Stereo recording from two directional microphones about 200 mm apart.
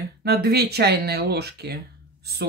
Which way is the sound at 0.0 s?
55° right (ahead or behind).